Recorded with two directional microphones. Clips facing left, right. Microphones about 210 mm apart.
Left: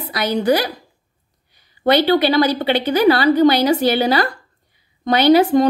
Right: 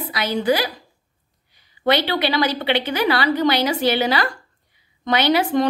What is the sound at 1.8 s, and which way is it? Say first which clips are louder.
A woman's voice: left 5 dB; 45° left (ahead or behind).